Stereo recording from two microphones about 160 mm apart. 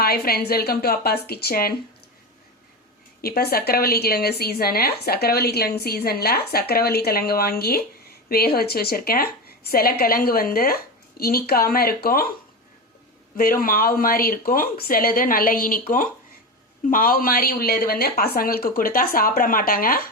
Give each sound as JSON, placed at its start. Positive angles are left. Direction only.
{"t": 0.0, "sound": "a woman's voice", "side_deg": 70}
{"t": 3.2, "sound": "a woman's voice", "side_deg": 70}
{"t": 13.3, "sound": "speech", "side_deg": 60}
{"t": 16.9, "sound": "a woman's voice", "side_deg": 60}